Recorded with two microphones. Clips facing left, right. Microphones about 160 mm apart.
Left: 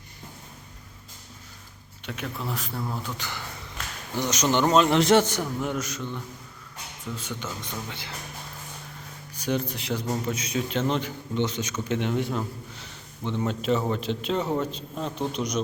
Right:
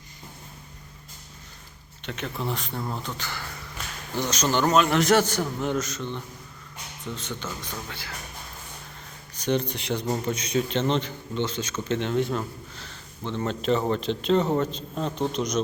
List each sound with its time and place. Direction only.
2.0 s speech: 5° left (ahead or behind)
3.2 s a man's voice: 15° left (ahead or behind)
5.5 s a man's voice: 10° left (ahead or behind)
7.2 s a man's voice: 10° left (ahead or behind)
9.3 s a man's voice: 5° left (ahead or behind)